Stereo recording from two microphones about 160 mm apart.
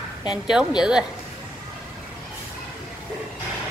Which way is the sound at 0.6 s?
5° right (ahead or behind).